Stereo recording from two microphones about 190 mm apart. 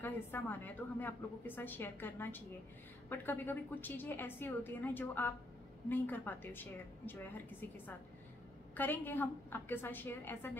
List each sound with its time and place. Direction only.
0.0 s a woman's voice: 10° left (ahead or behind)